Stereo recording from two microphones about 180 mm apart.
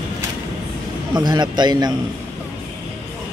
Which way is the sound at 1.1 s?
25° right (ahead or behind).